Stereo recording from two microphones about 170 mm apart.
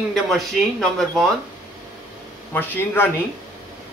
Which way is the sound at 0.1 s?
Centre (ahead or behind).